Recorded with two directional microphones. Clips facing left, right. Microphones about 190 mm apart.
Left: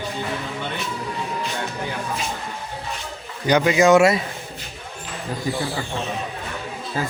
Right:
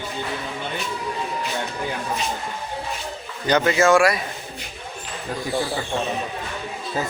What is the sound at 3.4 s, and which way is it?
Speech, 10° left (ahead or behind).